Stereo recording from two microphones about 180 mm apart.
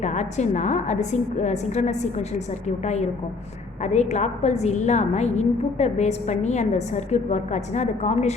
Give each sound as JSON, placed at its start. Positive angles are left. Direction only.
{"t": 0.0, "sound": "a woman's voice", "side_deg": 40}